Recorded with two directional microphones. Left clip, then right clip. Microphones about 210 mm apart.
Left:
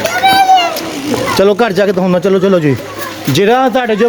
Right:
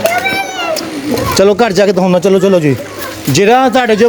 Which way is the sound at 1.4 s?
10° right (ahead or behind).